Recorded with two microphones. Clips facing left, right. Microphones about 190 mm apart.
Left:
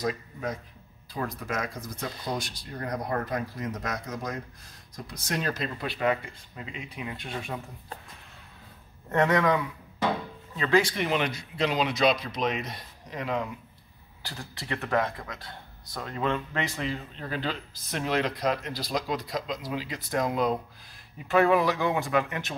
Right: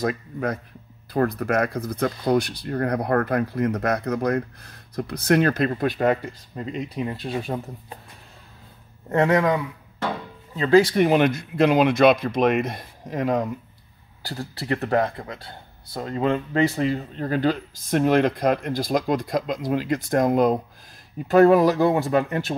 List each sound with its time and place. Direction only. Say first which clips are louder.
1.1 s speech: right 11 dB; 60° right (ahead or behind); by 7.3 s 35° right (ahead or behind)
9.1 s speech: right 4 dB; 30° right (ahead or behind)
10.6 s speech: right 8 dB; 35° right (ahead or behind)
11.1 s speech: right 9 dB; 50° right (ahead or behind); by 22.6 s 35° right (ahead or behind)